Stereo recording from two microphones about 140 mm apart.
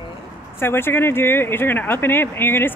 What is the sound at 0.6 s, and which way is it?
Speech, 15° left (ahead or behind).